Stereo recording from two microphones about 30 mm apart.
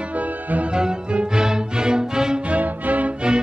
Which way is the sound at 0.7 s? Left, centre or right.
Right.